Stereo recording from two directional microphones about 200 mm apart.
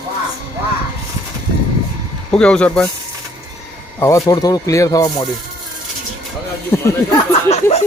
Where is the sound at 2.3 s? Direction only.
5° left (ahead or behind).